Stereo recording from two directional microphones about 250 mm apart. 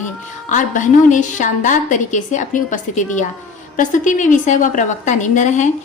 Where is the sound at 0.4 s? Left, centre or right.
Left.